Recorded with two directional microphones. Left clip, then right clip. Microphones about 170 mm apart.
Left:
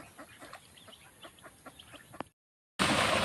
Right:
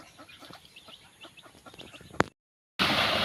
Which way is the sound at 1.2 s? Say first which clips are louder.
Even; 15° left (ahead or behind).